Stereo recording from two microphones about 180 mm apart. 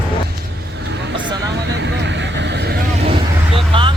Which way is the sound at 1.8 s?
75° right (ahead or behind).